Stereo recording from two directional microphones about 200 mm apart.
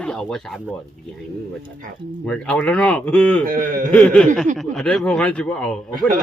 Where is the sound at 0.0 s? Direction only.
5° left (ahead or behind).